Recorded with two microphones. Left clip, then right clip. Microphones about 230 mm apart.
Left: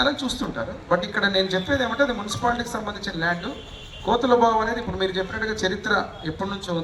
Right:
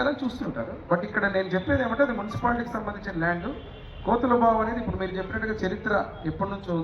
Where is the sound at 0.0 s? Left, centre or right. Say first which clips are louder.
Left 4 dB; left.